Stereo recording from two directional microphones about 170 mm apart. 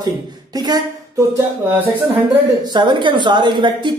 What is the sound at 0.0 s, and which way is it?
A woman's voice, 25° right (ahead or behind).